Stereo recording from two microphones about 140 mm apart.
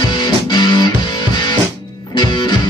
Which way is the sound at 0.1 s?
35° left (ahead or behind).